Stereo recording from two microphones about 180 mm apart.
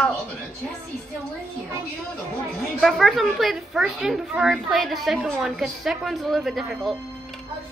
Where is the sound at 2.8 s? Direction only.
Centre (ahead or behind).